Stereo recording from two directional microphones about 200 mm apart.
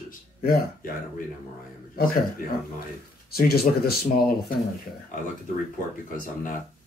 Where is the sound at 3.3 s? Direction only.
50° left (ahead or behind).